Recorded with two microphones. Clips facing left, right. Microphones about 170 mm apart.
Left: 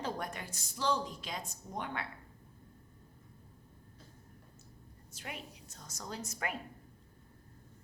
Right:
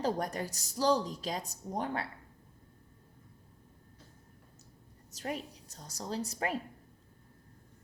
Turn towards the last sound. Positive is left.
turn(degrees=-30)  # may be behind; listen again after turning